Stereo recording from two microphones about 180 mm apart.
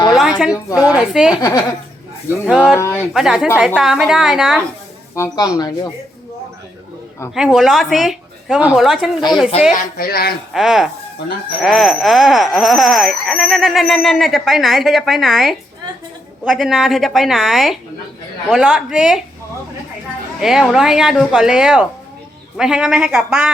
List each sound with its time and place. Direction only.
0.1 s a sound: 5° right (ahead or behind)
0.9 s a woman's voice: 5° right (ahead or behind)
1.4 s speech: 15° left (ahead or behind)
2.5 s speech: 5° right (ahead or behind)
2.7 s speech: 15° left (ahead or behind)
3.1 s speech: 5° right (ahead or behind)
5.1 s speech: 15° left (ahead or behind)
7.3 s speech: centre (ahead or behind)
9.7 s speech: 55° left (ahead or behind)
10.5 s speech: 5° right (ahead or behind)
20.4 s speech: centre (ahead or behind)